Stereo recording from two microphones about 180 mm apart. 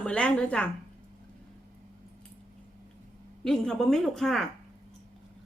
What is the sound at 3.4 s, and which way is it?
A woman's voice, 5° left (ahead or behind).